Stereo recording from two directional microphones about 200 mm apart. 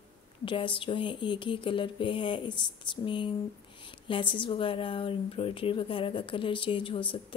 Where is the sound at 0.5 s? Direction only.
25° left (ahead or behind).